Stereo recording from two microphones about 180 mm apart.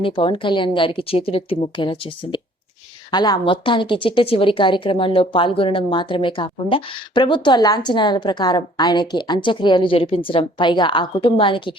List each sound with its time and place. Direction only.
0.0 s a woman's voice: 30° left (ahead or behind)